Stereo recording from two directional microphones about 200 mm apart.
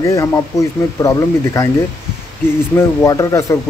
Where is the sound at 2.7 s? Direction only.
15° left (ahead or behind).